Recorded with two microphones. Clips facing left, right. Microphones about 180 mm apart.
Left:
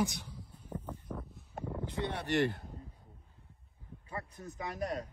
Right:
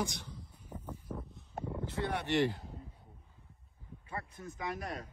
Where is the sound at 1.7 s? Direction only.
20° left (ahead or behind).